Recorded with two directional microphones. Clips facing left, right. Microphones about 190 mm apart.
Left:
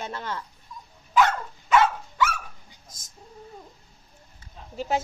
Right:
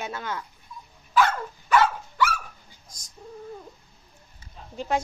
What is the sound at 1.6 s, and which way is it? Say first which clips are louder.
Dog: left 1 dB; 20° left (ahead or behind).